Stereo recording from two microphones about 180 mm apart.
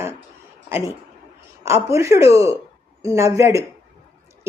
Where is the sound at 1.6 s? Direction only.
15° right (ahead or behind).